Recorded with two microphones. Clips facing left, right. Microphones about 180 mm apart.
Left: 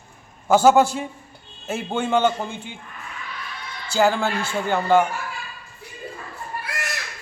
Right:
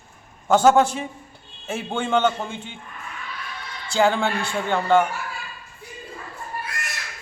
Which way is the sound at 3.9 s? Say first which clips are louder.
Even; 5° left (ahead or behind).